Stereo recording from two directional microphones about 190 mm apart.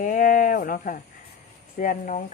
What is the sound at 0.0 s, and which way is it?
Speech, 45° left (ahead or behind).